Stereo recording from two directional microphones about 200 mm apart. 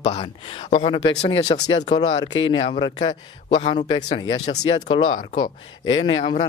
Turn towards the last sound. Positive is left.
turn(degrees=25)  # may be behind; listen again after turning